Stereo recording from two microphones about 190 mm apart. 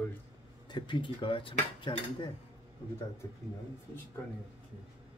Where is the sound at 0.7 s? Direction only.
25° left (ahead or behind).